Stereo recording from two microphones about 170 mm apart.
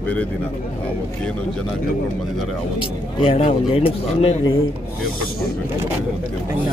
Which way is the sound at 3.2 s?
40° left (ahead or behind).